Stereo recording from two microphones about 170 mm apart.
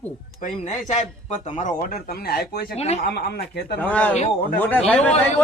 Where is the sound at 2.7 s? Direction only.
40° left (ahead or behind).